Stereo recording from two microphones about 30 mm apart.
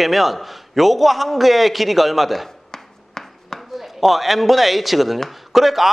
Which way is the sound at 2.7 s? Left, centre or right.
Left.